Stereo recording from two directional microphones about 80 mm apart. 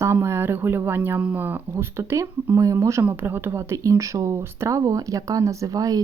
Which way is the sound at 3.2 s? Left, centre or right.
Right.